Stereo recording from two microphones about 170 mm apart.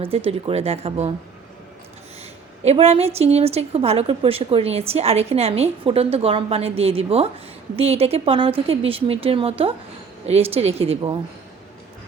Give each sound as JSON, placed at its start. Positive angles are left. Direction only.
{"t": 0.0, "sound": "a woman's voice", "side_deg": -35}
{"t": 2.6, "sound": "a woman's voice", "side_deg": -40}